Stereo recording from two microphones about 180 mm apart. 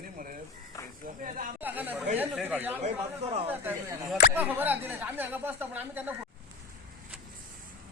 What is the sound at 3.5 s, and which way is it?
Speech, 10° right (ahead or behind).